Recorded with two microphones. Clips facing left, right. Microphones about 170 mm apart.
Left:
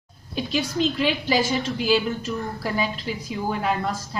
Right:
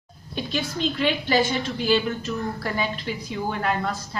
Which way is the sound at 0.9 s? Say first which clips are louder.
Right 5 dB; 5° left (ahead or behind).